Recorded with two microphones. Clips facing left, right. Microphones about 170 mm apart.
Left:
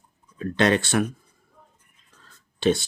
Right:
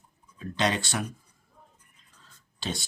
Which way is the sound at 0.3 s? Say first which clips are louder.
Left 7 dB; 60° left (ahead or behind).